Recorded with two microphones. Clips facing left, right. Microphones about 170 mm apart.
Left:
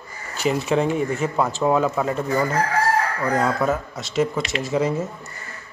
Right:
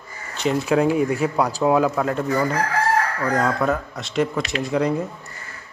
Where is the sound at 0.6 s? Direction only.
5° right (ahead or behind).